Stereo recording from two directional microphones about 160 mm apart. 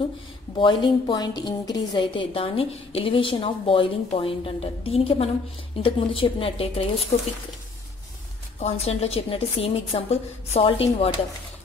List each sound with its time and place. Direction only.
0.6 s a woman's voice: 30° left (ahead or behind)
8.5 s a woman's voice: 40° left (ahead or behind)